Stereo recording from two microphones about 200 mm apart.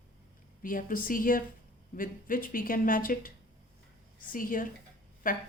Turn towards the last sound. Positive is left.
turn(degrees=45)  # may be behind; listen again after turning